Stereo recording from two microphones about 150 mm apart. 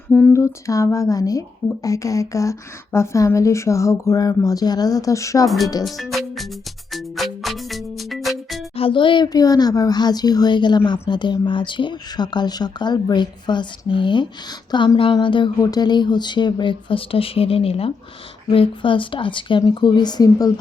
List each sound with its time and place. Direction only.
0.1 s a sound: 10° left (ahead or behind)
0.3 s speech: 20° left (ahead or behind)
5.8 s speech: centre (ahead or behind)
6.9 s music: centre (ahead or behind)
8.7 s speech: 35° left (ahead or behind)